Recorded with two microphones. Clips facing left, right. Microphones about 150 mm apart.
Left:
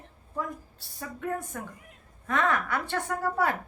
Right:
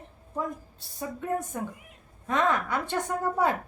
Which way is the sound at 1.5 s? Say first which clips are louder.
Right 5 dB; 20° right (ahead or behind).